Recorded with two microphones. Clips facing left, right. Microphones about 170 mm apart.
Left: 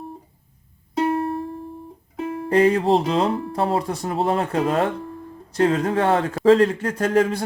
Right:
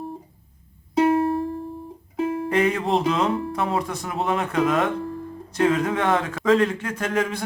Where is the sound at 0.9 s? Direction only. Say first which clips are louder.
Right 3 dB; centre (ahead or behind).